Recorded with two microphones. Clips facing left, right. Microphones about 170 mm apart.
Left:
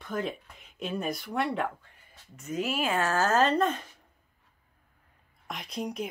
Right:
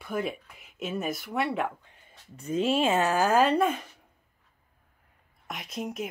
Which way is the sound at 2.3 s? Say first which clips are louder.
Right 5 dB; 30° right (ahead or behind).